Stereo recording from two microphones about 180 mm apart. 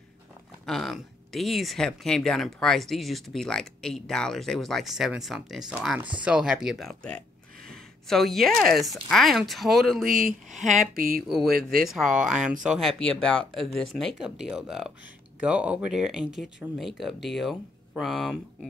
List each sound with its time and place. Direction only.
0.7 s speech: centre (ahead or behind)
10.0 s speech: 50° right (ahead or behind)
11.2 s speech: centre (ahead or behind)